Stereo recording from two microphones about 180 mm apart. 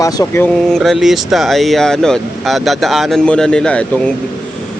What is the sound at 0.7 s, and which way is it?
Speech, centre (ahead or behind).